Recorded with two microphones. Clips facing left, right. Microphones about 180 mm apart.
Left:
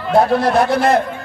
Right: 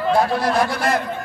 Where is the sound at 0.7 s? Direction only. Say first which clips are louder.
Left 6 dB; 55° left (ahead or behind).